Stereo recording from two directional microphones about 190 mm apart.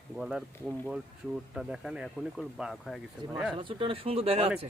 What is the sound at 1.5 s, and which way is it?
Speech, 5° right (ahead or behind).